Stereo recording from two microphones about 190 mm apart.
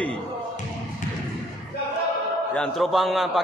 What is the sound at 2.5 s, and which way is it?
Speech, centre (ahead or behind).